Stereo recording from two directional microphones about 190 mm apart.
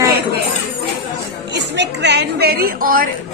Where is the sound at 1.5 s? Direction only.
65° right (ahead or behind); by 3.1 s 50° right (ahead or behind).